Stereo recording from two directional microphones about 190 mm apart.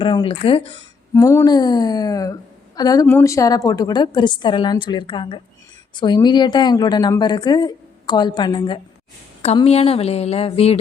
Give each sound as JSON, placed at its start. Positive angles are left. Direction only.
{"t": 0.0, "sound": "speech", "side_deg": 25}
{"t": 1.1, "sound": "speech", "side_deg": 15}